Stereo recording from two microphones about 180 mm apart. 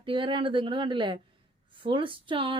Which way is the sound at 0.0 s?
30° right (ahead or behind).